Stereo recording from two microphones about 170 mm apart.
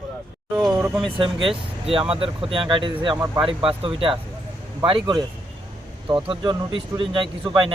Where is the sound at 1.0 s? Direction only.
30° right (ahead or behind).